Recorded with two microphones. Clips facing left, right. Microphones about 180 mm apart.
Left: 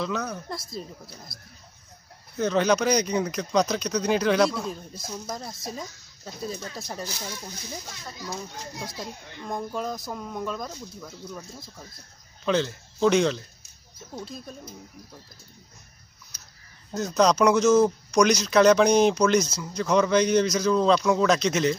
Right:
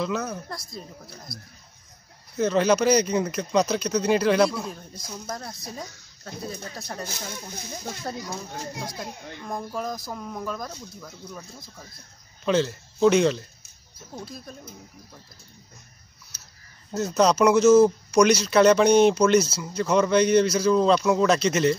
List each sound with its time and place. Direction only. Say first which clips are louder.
0.0 s speech: right 2 dB; 5° right (ahead or behind)
2.3 s speech: right 2 dB; centre (ahead or behind)
7.8 s speech: right 9 dB; 55° right (ahead or behind)
9.4 s speech: left 1 dB; centre (ahead or behind)
16.9 s speech: right 1 dB; 5° right (ahead or behind)